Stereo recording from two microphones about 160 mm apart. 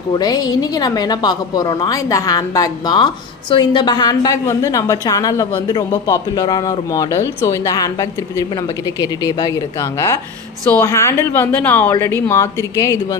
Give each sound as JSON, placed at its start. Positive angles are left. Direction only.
{"t": 0.1, "sound": "a woman's voice", "side_deg": 25}